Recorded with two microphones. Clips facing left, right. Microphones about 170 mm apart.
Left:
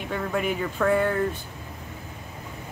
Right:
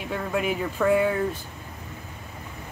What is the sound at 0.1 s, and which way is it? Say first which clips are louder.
Speech: even; 5° right (ahead or behind).